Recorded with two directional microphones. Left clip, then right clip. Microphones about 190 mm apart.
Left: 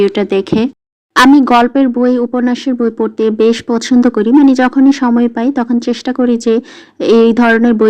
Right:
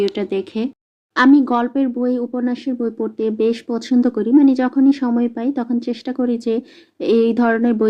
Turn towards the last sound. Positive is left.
turn(degrees=25)  # may be behind; listen again after turning